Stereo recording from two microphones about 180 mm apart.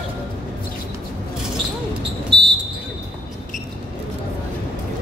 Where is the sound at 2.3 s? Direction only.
30° right (ahead or behind).